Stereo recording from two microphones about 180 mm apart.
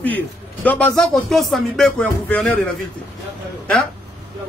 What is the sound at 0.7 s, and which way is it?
Speech, 5° left (ahead or behind).